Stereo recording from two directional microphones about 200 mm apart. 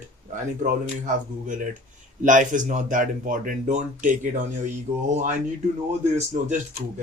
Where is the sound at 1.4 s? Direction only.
40° right (ahead or behind).